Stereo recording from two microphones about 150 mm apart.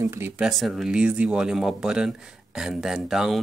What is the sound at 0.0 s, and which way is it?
Speech, 20° right (ahead or behind).